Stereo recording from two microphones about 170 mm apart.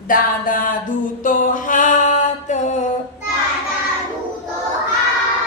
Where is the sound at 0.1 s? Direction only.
55° left (ahead or behind).